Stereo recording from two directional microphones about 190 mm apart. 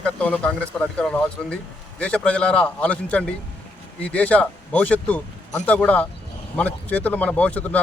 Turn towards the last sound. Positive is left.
turn(degrees=10)  # may be behind; listen again after turning